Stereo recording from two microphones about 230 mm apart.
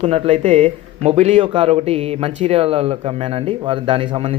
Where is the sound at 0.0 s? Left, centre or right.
Right.